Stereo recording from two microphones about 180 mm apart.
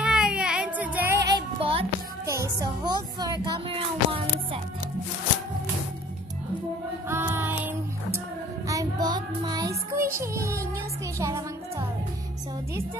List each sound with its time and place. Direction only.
0.0 s music: 5° right (ahead or behind); by 1.9 s 30° right (ahead or behind)
2.2 s speech: 15° right (ahead or behind)
7.1 s music: 10° right (ahead or behind)
8.6 s child singing: 20° right (ahead or behind)
11.1 s music: 15° right (ahead or behind)